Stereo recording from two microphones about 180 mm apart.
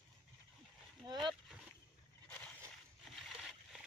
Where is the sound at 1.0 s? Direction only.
25° right (ahead or behind).